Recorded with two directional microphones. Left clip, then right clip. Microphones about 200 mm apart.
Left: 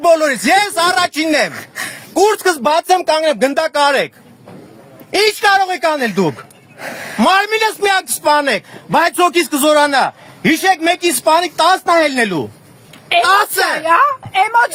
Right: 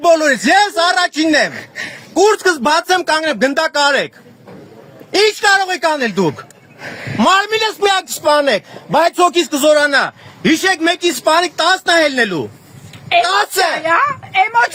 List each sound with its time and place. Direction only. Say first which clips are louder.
0.0 s speech: even; 15° left (ahead or behind)
5.1 s a man's voice: even; 25° left (ahead or behind); by 6.3 s 10° left (ahead or behind)
6.7 s a sound: left 2 dB; 30° left (ahead or behind)
7.2 s a man's voice: even; 15° left (ahead or behind)
13.2 s a woman's voice: left 2 dB; 55° left (ahead or behind)
13.8 s speech: left 2 dB; 25° left (ahead or behind)